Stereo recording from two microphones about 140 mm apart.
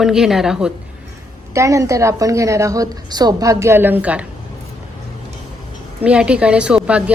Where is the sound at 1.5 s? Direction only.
20° right (ahead or behind).